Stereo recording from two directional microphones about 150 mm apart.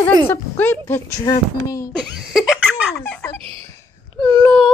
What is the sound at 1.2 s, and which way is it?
Speech, 25° left (ahead or behind).